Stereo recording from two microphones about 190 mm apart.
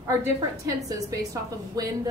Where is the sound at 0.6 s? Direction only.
20° right (ahead or behind).